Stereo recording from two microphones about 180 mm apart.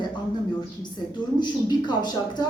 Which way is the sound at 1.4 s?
25° left (ahead or behind).